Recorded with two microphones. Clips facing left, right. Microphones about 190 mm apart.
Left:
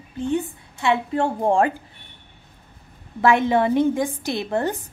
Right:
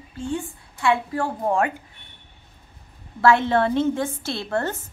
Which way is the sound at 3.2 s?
15° left (ahead or behind).